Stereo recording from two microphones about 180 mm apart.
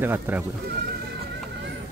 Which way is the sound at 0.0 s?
10° right (ahead or behind).